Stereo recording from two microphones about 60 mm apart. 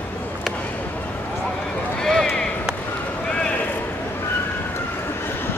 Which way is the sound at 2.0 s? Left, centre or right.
Centre.